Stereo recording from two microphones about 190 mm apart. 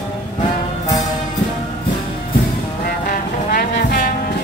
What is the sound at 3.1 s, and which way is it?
Music, 50° left (ahead or behind).